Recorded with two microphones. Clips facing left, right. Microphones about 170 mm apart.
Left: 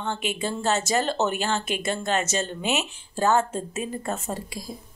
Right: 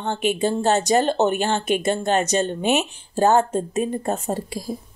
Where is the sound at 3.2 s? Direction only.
35° right (ahead or behind).